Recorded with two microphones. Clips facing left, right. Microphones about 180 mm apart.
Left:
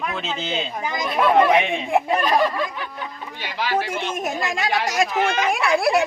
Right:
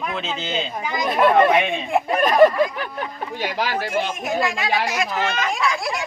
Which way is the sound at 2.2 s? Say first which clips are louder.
Right 6 dB; 50° right (ahead or behind).